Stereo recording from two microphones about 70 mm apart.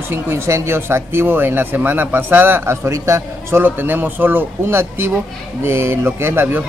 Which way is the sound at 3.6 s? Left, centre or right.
Right.